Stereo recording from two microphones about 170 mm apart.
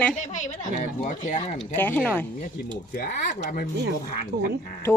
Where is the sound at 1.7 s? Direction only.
10° left (ahead or behind).